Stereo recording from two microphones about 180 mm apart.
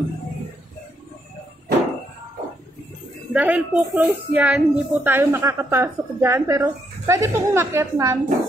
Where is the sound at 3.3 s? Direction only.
5° right (ahead or behind).